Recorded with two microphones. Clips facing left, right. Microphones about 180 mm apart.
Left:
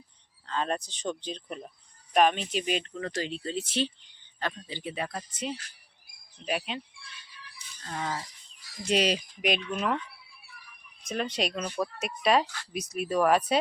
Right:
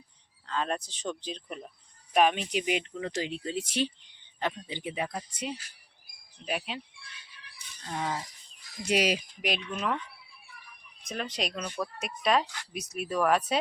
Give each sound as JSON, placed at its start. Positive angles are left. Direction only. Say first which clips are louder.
{"t": 0.4, "sound": "speech", "louder": "left 1 dB", "side_deg": 0}
{"t": 7.9, "sound": "speech", "louder": "right 1 dB", "side_deg": -10}
{"t": 11.1, "sound": "speech", "louder": "left 4 dB", "side_deg": 0}